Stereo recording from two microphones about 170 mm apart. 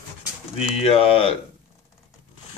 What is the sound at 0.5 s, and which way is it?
Speech, 35° left (ahead or behind).